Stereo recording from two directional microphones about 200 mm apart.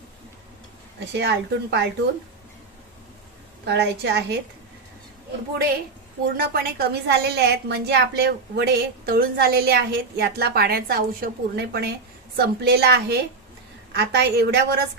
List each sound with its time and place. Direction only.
0.9 s speech: 55° right (ahead or behind)
3.7 s speech: 55° right (ahead or behind)
6.2 s a woman's voice: 50° right (ahead or behind)